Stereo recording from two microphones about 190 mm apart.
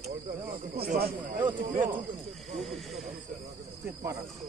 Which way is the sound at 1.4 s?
25° right (ahead or behind).